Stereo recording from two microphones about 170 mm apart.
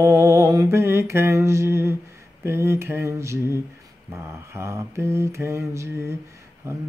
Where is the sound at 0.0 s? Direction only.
15° right (ahead or behind).